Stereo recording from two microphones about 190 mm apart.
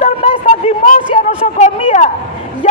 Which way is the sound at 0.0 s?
30° left (ahead or behind).